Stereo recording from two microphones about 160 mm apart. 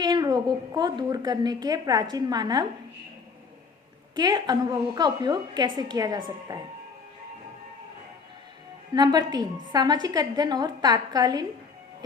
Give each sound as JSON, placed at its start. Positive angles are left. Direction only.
{"t": 0.0, "sound": "a woman's voice", "side_deg": -25}
{"t": 4.1, "sound": "a woman's voice", "side_deg": -25}
{"t": 9.0, "sound": "a woman's voice", "side_deg": -25}